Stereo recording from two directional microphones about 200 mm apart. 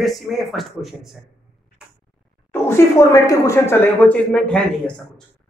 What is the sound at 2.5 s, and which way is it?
Speech, 10° left (ahead or behind).